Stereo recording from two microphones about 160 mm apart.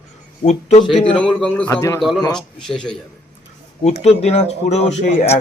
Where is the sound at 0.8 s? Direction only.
35° left (ahead or behind).